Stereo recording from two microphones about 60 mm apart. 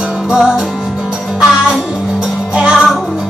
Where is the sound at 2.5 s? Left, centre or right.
Centre.